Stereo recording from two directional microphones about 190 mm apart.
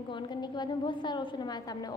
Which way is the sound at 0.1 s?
25° left (ahead or behind).